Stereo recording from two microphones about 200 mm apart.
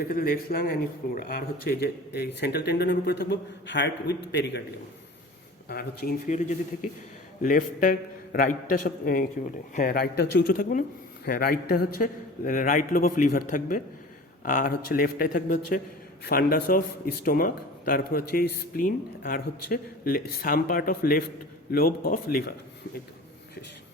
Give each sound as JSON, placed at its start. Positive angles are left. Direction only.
{"t": 0.0, "sound": "speech", "side_deg": 45}
{"t": 5.6, "sound": "speech", "side_deg": 50}